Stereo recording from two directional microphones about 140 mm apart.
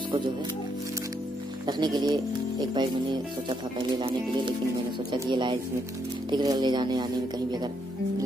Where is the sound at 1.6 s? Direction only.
30° right (ahead or behind).